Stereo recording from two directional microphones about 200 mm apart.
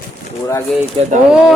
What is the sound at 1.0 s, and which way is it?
Speech, 25° right (ahead or behind).